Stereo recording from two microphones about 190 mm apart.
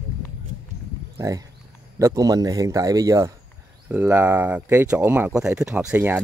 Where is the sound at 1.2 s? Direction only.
20° right (ahead or behind).